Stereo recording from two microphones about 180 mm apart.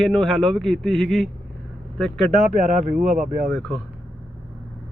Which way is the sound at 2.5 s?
40° right (ahead or behind).